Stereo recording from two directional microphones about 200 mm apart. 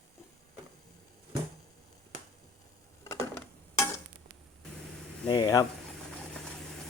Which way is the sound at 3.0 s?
15° left (ahead or behind).